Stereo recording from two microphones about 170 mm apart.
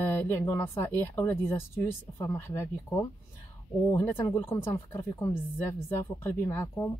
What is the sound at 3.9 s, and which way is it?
Speech, 15° left (ahead or behind).